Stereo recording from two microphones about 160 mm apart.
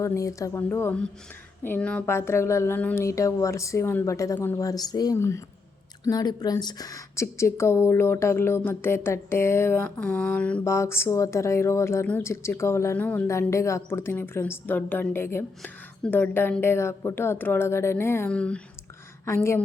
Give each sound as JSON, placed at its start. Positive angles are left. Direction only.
{"t": 0.0, "sound": "speech", "side_deg": 20}